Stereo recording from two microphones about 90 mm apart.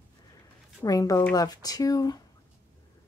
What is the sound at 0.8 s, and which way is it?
Speech, 40° left (ahead or behind).